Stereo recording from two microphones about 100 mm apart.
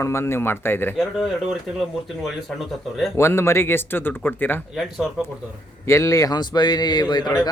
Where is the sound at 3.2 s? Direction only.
25° left (ahead or behind).